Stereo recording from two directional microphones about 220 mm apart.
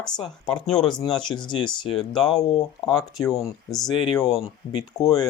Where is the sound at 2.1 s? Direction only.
Centre (ahead or behind).